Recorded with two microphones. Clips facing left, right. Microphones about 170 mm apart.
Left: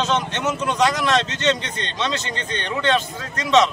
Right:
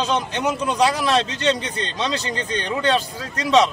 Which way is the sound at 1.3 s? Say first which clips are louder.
Even; 35° right (ahead or behind).